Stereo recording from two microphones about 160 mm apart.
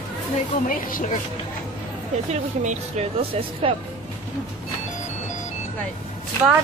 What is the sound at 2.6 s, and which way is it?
Speech, 45° right (ahead or behind).